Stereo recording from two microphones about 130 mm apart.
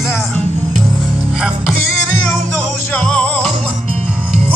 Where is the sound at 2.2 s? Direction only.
10° left (ahead or behind).